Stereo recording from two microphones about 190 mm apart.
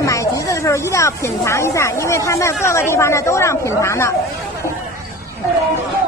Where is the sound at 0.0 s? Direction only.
15° left (ahead or behind).